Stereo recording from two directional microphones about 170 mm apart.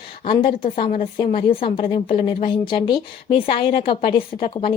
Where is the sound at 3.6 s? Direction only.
60° left (ahead or behind).